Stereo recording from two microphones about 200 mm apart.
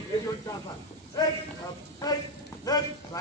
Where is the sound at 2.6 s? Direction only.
20° left (ahead or behind).